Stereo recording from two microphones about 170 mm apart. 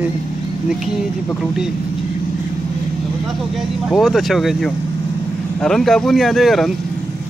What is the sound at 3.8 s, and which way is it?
Speech, centre (ahead or behind).